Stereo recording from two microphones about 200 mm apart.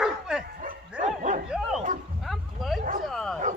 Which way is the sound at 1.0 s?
35° right (ahead or behind).